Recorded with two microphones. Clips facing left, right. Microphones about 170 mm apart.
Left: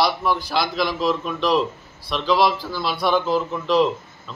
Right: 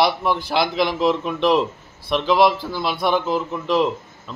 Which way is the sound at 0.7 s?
20° right (ahead or behind).